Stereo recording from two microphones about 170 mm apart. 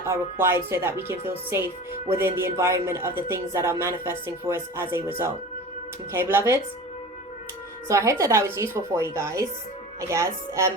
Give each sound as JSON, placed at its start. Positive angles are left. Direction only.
{"t": 0.1, "sound": "a woman's voice", "side_deg": -15}
{"t": 7.9, "sound": "a woman's voice", "side_deg": -20}